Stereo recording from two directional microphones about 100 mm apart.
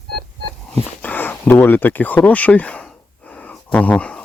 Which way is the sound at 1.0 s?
15° left (ahead or behind).